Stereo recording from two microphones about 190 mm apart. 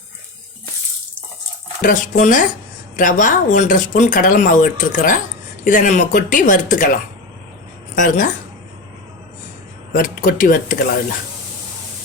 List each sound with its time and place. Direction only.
1.8 s speech: 45° left (ahead or behind)
9.9 s speech: 50° left (ahead or behind)